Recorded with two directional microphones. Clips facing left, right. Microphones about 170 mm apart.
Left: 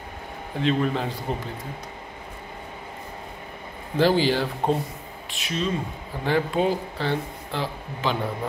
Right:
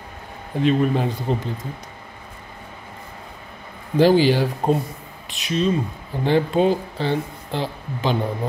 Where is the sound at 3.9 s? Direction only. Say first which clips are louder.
Right 5 dB; 15° right (ahead or behind).